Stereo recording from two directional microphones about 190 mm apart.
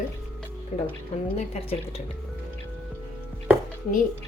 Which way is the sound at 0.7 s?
45° left (ahead or behind).